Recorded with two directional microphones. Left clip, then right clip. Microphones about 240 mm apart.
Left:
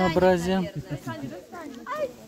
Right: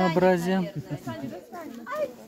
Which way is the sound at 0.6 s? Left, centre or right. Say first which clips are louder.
Left 1 dB; left.